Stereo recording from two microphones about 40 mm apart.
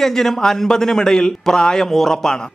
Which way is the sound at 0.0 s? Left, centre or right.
Centre.